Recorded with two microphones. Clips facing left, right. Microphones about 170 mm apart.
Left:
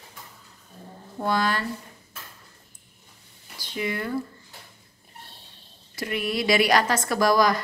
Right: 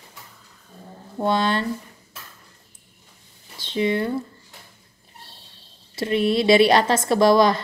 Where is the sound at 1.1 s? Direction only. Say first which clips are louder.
Right 4 dB; 25° right (ahead or behind).